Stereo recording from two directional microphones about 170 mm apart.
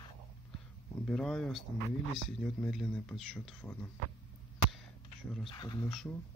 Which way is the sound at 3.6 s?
10° left (ahead or behind).